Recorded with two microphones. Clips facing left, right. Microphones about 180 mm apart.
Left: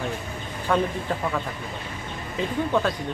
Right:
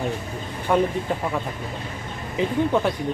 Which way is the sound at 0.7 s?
10° right (ahead or behind).